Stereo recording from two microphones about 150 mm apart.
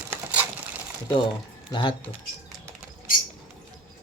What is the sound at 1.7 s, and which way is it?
Speech, 30° left (ahead or behind).